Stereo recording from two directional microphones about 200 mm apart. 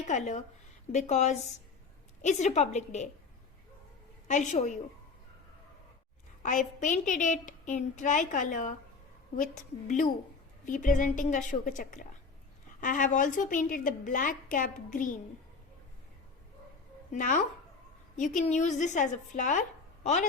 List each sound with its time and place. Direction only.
0.1 s a woman's voice: 35° left (ahead or behind)
4.3 s a woman's voice: 35° left (ahead or behind)
6.4 s a woman's voice: 40° left (ahead or behind)
17.1 s a woman's voice: 40° left (ahead or behind)